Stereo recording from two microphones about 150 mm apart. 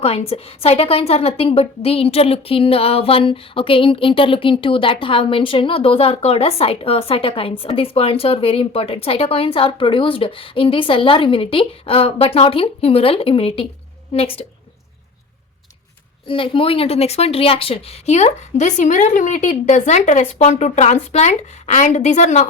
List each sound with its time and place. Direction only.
0.0 s a woman's voice: 40° left (ahead or behind)
16.2 s a woman's voice: 35° left (ahead or behind); by 22.4 s 50° left (ahead or behind)